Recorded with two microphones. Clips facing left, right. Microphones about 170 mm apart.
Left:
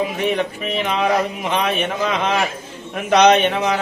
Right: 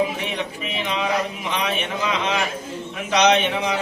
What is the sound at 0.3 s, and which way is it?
Speech, 55° left (ahead or behind).